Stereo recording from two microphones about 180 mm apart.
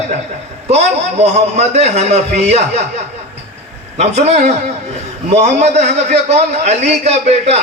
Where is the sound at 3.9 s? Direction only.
35° right (ahead or behind).